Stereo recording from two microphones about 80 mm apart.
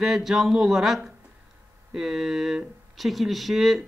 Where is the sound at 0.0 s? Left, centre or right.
Centre.